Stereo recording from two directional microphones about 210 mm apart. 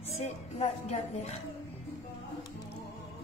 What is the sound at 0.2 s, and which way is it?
Speech, 30° left (ahead or behind).